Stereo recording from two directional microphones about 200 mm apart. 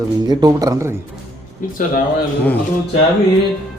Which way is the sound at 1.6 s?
40° left (ahead or behind).